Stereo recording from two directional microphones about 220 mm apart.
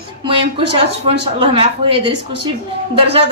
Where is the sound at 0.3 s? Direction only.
25° right (ahead or behind).